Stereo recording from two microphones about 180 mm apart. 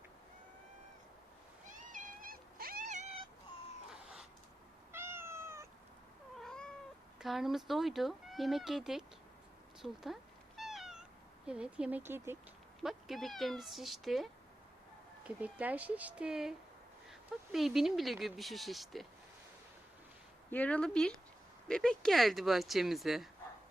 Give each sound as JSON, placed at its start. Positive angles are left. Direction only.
{"t": 1.6, "sound": "cat", "side_deg": -45}
{"t": 3.9, "sound": "a sound", "side_deg": -5}
{"t": 4.9, "sound": "cat", "side_deg": -15}
{"t": 6.4, "sound": "cat", "side_deg": 5}
{"t": 7.2, "sound": "speech", "side_deg": 0}
{"t": 10.6, "sound": "cat", "side_deg": 0}
{"t": 11.4, "sound": "speech", "side_deg": -5}
{"t": 12.8, "sound": "speech", "side_deg": 0}
{"t": 20.5, "sound": "speech", "side_deg": 10}